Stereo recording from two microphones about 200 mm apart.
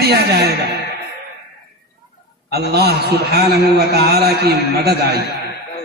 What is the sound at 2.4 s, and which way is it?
A man's voice, 55° right (ahead or behind).